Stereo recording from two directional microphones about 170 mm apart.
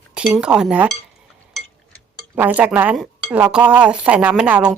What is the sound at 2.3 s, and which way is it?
Speech, 10° right (ahead or behind).